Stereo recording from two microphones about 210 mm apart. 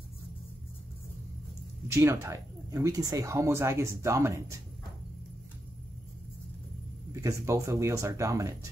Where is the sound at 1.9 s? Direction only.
15° right (ahead or behind).